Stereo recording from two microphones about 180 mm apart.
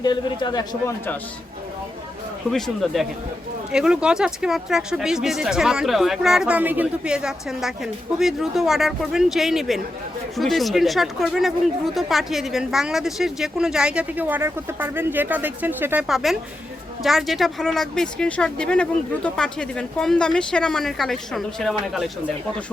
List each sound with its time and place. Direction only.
0.0 s a man's voice: 25° left (ahead or behind)
2.5 s speech: centre (ahead or behind)